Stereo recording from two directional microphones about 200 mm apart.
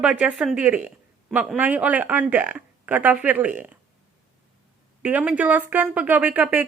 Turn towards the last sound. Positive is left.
turn(degrees=-10)  # may be behind; listen again after turning